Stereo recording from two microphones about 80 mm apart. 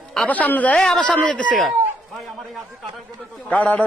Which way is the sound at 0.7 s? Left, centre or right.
Centre.